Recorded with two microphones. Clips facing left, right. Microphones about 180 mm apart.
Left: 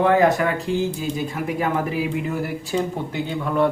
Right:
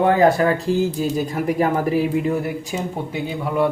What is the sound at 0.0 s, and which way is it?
A man's voice, 30° right (ahead or behind).